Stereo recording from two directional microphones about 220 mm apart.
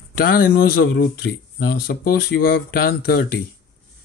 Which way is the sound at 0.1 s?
40° left (ahead or behind).